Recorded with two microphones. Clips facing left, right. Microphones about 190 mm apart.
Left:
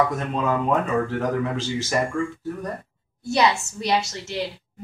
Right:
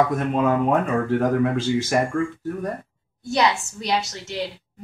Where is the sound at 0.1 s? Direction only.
55° right (ahead or behind).